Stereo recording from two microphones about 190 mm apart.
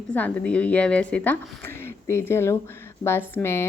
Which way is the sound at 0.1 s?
5° left (ahead or behind).